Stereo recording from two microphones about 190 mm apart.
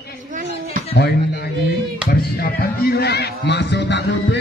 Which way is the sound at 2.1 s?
50° left (ahead or behind).